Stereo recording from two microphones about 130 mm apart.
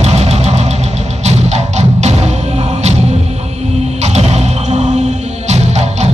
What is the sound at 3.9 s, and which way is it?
Music, 60° right (ahead or behind).